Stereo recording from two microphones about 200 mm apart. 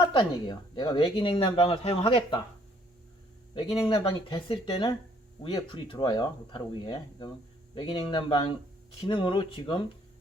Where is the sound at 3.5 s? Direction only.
25° left (ahead or behind).